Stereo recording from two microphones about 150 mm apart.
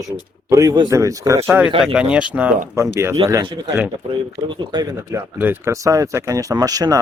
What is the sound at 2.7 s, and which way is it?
Speech, 20° right (ahead or behind).